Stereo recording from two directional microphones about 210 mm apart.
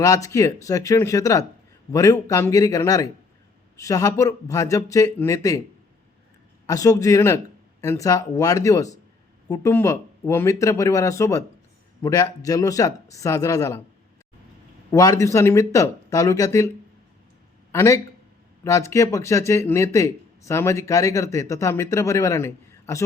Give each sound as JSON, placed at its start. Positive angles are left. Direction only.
{"t": 0.0, "sound": "a man's voice", "side_deg": 15}
{"t": 6.7, "sound": "a man's voice", "side_deg": 15}
{"t": 14.8, "sound": "a man's voice", "side_deg": 15}